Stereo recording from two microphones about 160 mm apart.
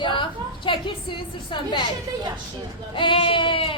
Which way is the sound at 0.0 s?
30° left (ahead or behind).